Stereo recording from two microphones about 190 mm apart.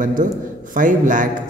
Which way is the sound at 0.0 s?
45° right (ahead or behind).